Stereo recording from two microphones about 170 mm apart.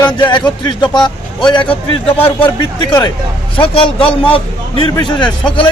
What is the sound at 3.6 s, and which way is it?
A man's voice, 30° left (ahead or behind).